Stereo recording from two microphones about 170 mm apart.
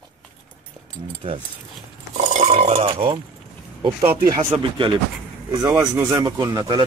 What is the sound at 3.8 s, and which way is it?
Speech, 25° right (ahead or behind).